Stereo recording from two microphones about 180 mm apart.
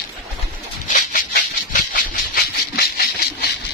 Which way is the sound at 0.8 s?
45° left (ahead or behind).